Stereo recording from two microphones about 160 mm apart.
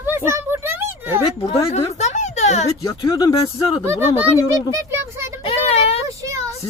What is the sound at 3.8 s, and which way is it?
Speech, 15° right (ahead or behind).